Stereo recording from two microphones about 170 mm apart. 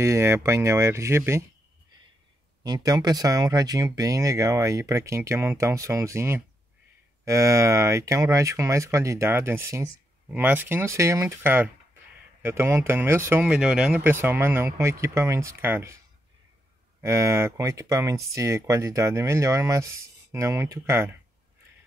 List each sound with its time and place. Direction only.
0.0 s speech: 15° right (ahead or behind)
2.6 s speech: 20° right (ahead or behind)
17.0 s speech: 15° right (ahead or behind)